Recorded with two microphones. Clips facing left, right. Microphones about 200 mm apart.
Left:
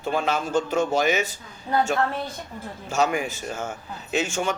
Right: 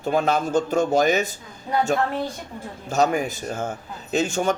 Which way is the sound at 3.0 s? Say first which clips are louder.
Right 3 dB; 40° right (ahead or behind).